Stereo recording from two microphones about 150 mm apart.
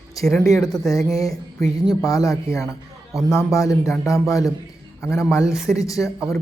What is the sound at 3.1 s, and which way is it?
Speech, centre (ahead or behind).